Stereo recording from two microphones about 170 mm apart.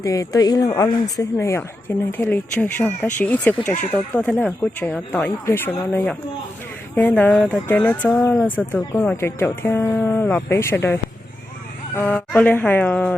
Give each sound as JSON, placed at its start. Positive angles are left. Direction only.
{"t": 0.0, "sound": "speech", "side_deg": 20}